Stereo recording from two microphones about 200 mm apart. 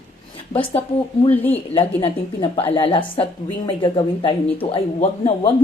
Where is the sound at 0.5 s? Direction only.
30° left (ahead or behind).